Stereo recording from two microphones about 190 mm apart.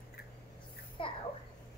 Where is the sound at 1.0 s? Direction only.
25° left (ahead or behind).